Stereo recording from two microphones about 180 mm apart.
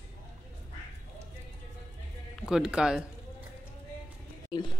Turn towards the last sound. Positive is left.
turn(degrees=25)  # may be behind; listen again after turning